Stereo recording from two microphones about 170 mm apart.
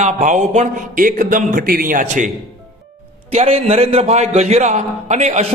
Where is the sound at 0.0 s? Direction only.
45° right (ahead or behind).